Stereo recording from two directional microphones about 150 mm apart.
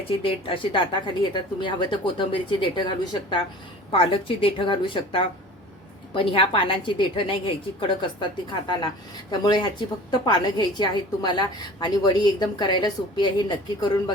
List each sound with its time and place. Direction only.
0.1 s a woman's voice: 40° left (ahead or behind)